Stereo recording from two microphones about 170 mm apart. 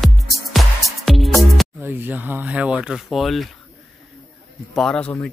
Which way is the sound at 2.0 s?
10° right (ahead or behind).